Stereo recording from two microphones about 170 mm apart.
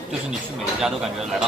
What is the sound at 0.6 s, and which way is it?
Speech, 5° right (ahead or behind).